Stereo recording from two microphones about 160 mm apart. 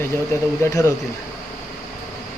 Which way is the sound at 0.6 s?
20° left (ahead or behind).